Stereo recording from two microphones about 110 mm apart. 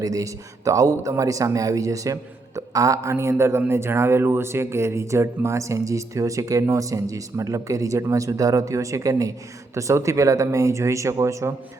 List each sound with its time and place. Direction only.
0.0 s speech: 30° right (ahead or behind)